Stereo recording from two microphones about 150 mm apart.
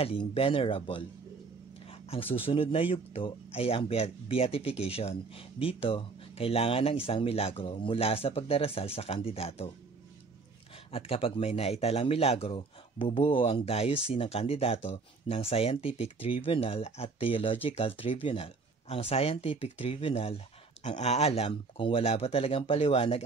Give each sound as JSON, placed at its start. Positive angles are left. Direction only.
{"t": 0.0, "sound": "speech", "side_deg": 40}
{"t": 1.9, "sound": "a sound", "side_deg": 40}
{"t": 2.3, "sound": "speech", "side_deg": 40}
{"t": 10.9, "sound": "speech", "side_deg": 40}